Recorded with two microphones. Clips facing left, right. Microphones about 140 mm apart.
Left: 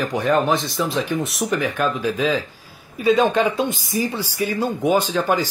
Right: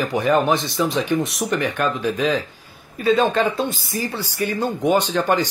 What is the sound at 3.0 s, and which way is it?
Speech, 10° left (ahead or behind).